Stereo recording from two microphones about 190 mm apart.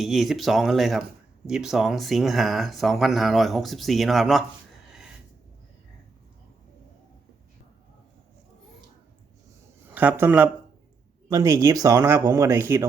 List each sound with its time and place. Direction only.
0.0 s speech: centre (ahead or behind)
4.9 s a sound: 5° right (ahead or behind)
9.9 s a man's voice: 10° right (ahead or behind)